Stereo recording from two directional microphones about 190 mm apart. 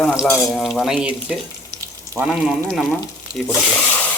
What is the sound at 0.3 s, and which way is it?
Stir, centre (ahead or behind).